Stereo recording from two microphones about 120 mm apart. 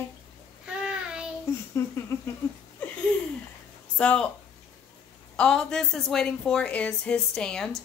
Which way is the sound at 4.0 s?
10° left (ahead or behind).